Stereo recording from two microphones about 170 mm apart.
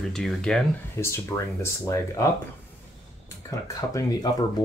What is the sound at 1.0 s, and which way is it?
Speech, 15° left (ahead or behind).